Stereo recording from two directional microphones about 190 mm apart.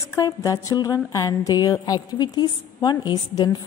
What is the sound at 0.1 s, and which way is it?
Speech, 15° left (ahead or behind).